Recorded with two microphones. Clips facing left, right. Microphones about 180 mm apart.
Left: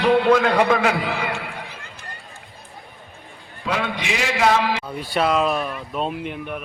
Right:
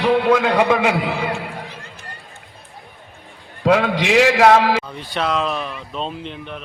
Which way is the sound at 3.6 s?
85° right.